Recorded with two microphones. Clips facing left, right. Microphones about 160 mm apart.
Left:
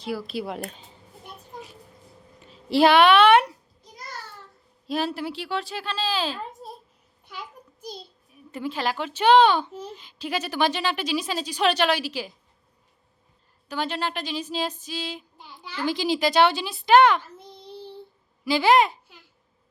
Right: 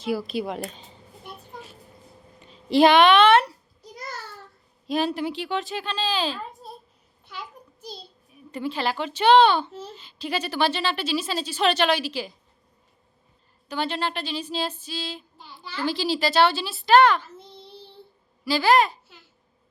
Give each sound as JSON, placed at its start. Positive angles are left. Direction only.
{"t": 0.0, "sound": "speech", "side_deg": 0}
{"t": 2.4, "sound": "speech", "side_deg": 5}
{"t": 4.9, "sound": "speech", "side_deg": 0}
{"t": 7.3, "sound": "a sound", "side_deg": 10}
{"t": 8.3, "sound": "speech", "side_deg": 10}
{"t": 13.7, "sound": "a sound", "side_deg": 10}
{"t": 18.4, "sound": "a child's voice", "side_deg": 20}